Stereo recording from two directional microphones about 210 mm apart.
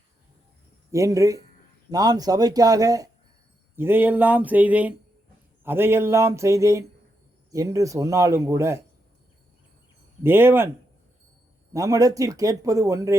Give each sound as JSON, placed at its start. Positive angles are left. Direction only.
{"t": 0.9, "sound": "speech", "side_deg": -15}
{"t": 10.2, "sound": "speech", "side_deg": -10}
{"t": 11.7, "sound": "speech", "side_deg": -15}